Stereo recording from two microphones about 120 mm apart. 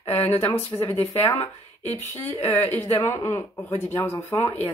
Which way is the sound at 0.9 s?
60° left (ahead or behind).